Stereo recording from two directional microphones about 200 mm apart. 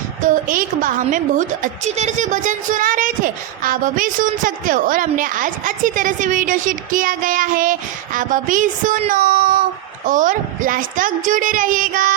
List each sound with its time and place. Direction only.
0.2 s a woman's voice: 40° right (ahead or behind)